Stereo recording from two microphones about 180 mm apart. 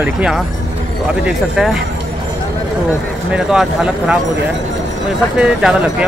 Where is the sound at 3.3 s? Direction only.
5° right (ahead or behind).